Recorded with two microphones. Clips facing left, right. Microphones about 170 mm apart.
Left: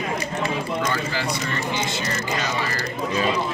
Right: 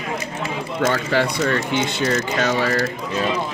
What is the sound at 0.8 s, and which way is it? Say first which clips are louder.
Speech: right 6 dB; 65° right (ahead or behind).